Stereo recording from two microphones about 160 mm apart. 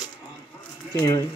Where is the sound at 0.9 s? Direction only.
20° left (ahead or behind).